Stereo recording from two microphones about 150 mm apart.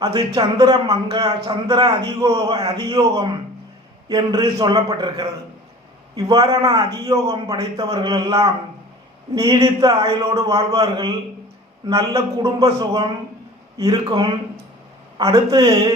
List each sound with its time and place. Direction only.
0.0 s a man's voice: 25° right (ahead or behind)
2.5 s speech: 40° right (ahead or behind)
2.7 s a man's voice: 25° right (ahead or behind)